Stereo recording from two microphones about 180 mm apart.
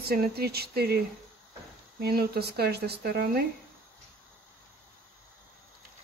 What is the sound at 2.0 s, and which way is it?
Speech, 60° right (ahead or behind).